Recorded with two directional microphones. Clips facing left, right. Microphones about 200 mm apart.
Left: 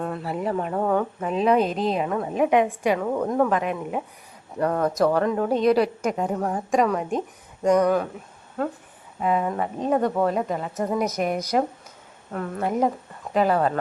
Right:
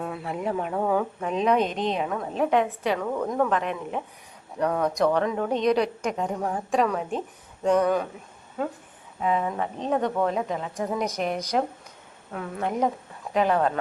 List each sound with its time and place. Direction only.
0.0 s speech: centre (ahead or behind)